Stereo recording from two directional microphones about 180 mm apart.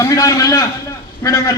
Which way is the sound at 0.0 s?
20° left (ahead or behind).